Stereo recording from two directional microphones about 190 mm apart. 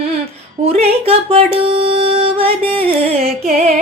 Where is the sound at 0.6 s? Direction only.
30° right (ahead or behind).